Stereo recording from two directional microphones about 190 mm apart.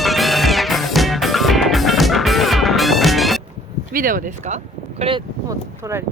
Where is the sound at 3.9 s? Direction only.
45° right (ahead or behind); by 6.1 s 15° right (ahead or behind).